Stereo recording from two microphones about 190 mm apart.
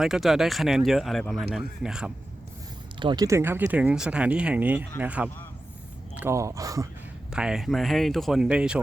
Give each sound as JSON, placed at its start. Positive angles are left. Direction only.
{"t": 0.0, "sound": "speech", "side_deg": 0}
{"t": 3.0, "sound": "speech", "side_deg": -20}
{"t": 7.3, "sound": "speech", "side_deg": -5}